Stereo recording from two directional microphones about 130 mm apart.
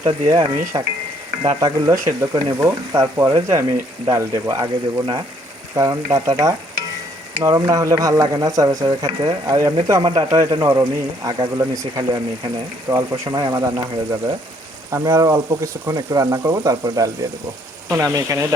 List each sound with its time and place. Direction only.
0.0 s speech: 30° right (ahead or behind)